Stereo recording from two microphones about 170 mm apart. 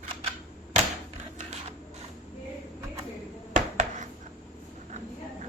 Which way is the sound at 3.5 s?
45° right (ahead or behind).